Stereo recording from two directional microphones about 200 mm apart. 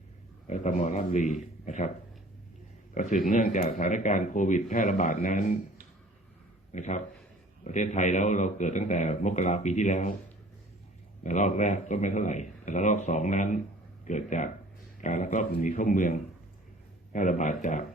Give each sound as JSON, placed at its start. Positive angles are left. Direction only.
{"t": 0.4, "sound": "a man's voice", "side_deg": 35}
{"t": 2.9, "sound": "a man's voice", "side_deg": 40}
{"t": 6.7, "sound": "a man's voice", "side_deg": 35}
{"t": 11.2, "sound": "a man's voice", "side_deg": 40}